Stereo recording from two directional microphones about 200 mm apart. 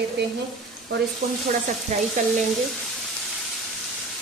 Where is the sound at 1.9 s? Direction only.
35° right (ahead or behind).